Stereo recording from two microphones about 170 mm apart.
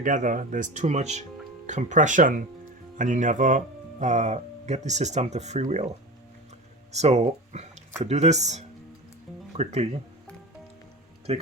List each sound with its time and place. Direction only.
0.0 s speech: 50° right (ahead or behind)
6.9 s speech: 40° right (ahead or behind)
11.3 s speech: 35° right (ahead or behind)